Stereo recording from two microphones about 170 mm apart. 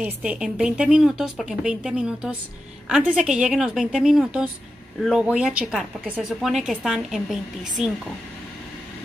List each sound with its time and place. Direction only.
0.0 s speech: 5° right (ahead or behind)